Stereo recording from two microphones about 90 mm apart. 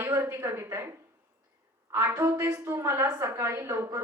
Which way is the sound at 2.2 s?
30° right (ahead or behind).